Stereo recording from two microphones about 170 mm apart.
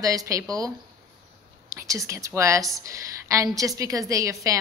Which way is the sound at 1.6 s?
20° right (ahead or behind).